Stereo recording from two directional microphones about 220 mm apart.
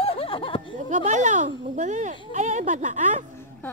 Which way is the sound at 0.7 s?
35° right (ahead or behind).